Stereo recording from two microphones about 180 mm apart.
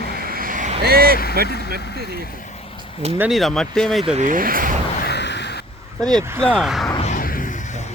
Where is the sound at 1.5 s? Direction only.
65° left (ahead or behind).